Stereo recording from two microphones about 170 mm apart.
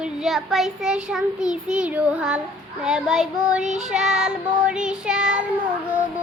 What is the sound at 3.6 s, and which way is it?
Child singing, 45° right (ahead or behind).